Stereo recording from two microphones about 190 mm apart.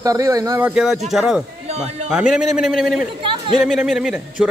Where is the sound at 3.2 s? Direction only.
25° right (ahead or behind).